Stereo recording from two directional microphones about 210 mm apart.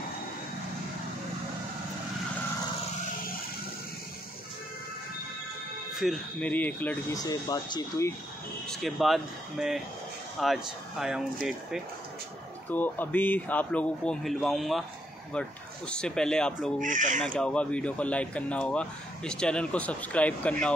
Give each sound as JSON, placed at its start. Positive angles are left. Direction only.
{"t": 5.9, "sound": "speech", "side_deg": 5}
{"t": 8.6, "sound": "speech", "side_deg": 0}
{"t": 12.6, "sound": "speech", "side_deg": 10}
{"t": 16.8, "sound": "speech", "side_deg": -40}
{"t": 17.2, "sound": "speech", "side_deg": 5}